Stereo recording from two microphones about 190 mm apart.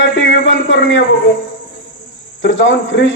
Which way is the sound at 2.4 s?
80° left.